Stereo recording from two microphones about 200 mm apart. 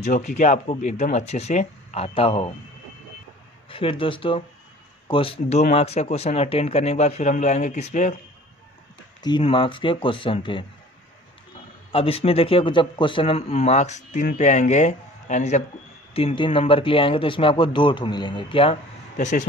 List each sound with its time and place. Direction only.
0.0 s a man's voice: 40° left (ahead or behind)
3.6 s a man's voice: 25° left (ahead or behind)
9.2 s a man's voice: 25° left (ahead or behind)
11.9 s a man's voice: 30° left (ahead or behind)
19.1 s speech: 40° left (ahead or behind)